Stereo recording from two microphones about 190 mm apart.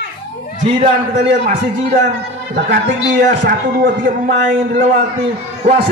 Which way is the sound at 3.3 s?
50° right (ahead or behind).